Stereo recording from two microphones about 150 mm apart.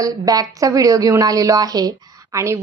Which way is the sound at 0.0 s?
25° right (ahead or behind).